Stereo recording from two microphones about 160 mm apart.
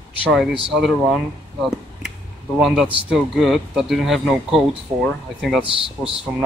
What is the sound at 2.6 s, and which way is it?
Speech, centre (ahead or behind).